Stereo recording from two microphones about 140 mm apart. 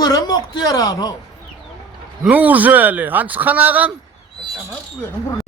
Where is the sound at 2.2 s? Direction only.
10° right (ahead or behind).